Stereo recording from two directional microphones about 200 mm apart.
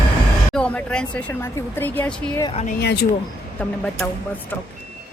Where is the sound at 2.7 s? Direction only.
55° left (ahead or behind).